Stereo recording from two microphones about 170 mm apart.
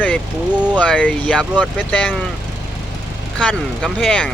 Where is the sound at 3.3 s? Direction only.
5° left (ahead or behind).